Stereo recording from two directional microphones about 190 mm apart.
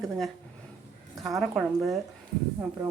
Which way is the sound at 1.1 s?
20° right (ahead or behind).